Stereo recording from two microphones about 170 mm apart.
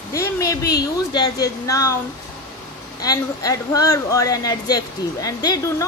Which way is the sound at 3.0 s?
20° left (ahead or behind).